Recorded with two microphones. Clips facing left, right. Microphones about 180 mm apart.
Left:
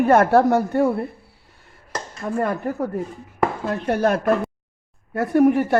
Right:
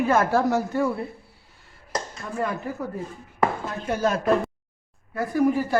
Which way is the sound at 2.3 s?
55° left (ahead or behind).